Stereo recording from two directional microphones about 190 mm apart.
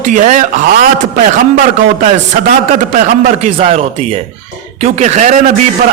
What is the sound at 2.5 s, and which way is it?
A man's voice, 45° right (ahead or behind).